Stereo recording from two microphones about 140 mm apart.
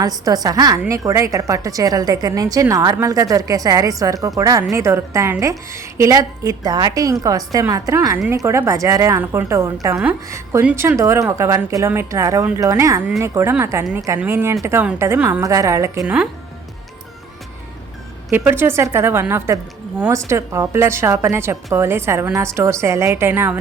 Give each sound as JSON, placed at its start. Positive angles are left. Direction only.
{"t": 0.0, "sound": "a woman's voice", "side_deg": -25}
{"t": 18.3, "sound": "a woman's voice", "side_deg": -15}